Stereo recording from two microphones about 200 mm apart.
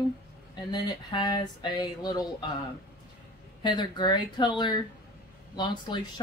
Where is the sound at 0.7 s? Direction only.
20° left (ahead or behind).